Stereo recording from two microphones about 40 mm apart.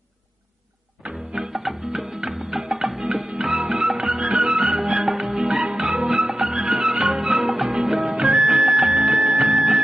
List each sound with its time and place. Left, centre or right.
1.0 s music: centre